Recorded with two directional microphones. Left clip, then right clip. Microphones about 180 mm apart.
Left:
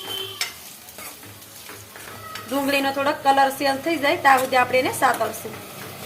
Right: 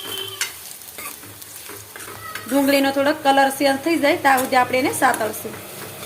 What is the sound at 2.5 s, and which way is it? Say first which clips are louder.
A woman's voice: right 4 dB; 15° right (ahead or behind).